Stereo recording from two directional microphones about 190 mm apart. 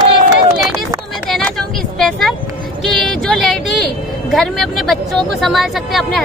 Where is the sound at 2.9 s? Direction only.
Centre (ahead or behind).